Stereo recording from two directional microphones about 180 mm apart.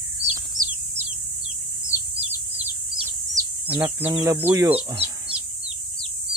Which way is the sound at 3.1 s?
10° right (ahead or behind).